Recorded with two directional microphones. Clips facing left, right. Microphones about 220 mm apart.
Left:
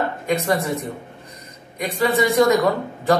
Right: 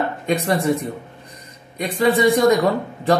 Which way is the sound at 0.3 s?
30° right (ahead or behind).